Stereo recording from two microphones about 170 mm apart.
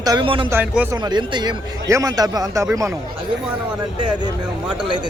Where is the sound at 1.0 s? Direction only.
25° right (ahead or behind).